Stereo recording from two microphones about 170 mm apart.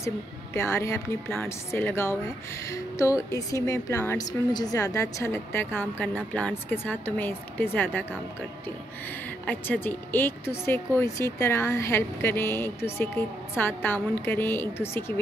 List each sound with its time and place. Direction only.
0.6 s a woman's voice: 15° left (ahead or behind)
9.5 s a woman's voice: 10° left (ahead or behind)